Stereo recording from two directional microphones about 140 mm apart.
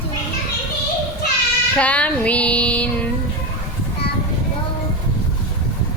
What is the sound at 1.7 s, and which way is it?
A woman's voice, 10° left (ahead or behind).